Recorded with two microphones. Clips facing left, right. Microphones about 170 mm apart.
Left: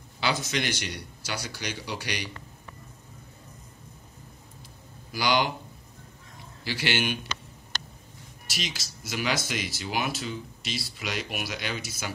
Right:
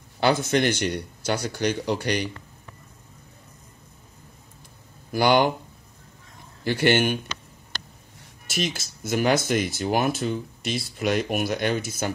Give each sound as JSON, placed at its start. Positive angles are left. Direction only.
{"t": 0.2, "sound": "speech", "side_deg": -55}
{"t": 5.1, "sound": "speech", "side_deg": -55}
{"t": 6.6, "sound": "speech", "side_deg": -55}
{"t": 8.5, "sound": "speech", "side_deg": -50}